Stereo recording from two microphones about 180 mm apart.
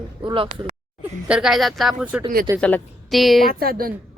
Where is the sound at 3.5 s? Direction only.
55° right (ahead or behind).